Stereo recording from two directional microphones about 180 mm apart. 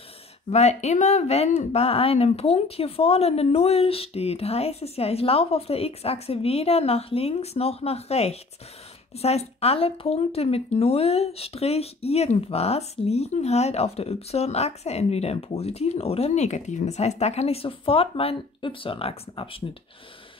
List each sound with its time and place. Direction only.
0.5 s speech: 40° left (ahead or behind)